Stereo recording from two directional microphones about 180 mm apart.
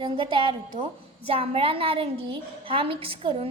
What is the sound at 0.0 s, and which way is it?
A woman's voice, 30° right (ahead or behind).